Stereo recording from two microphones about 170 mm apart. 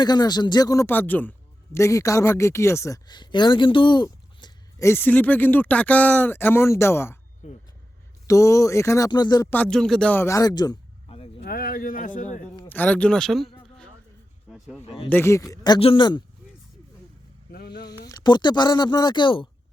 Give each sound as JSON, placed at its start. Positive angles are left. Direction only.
{"t": 0.0, "sound": "a man's voice", "side_deg": 25}
{"t": 4.9, "sound": "speech", "side_deg": 10}
{"t": 8.3, "sound": "speech", "side_deg": 20}
{"t": 9.5, "sound": "a man's voice", "side_deg": 5}
{"t": 11.4, "sound": "speech", "side_deg": 60}
{"t": 12.6, "sound": "speech", "side_deg": 10}
{"t": 15.1, "sound": "speech", "side_deg": 15}
{"t": 17.5, "sound": "a sound", "side_deg": 70}
{"t": 18.1, "sound": "speech", "side_deg": 25}